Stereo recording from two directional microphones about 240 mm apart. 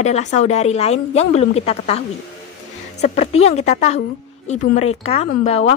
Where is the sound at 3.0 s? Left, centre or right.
Left.